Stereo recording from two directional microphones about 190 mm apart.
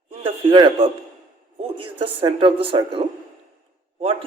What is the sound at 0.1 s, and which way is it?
A man's voice, 25° right (ahead or behind).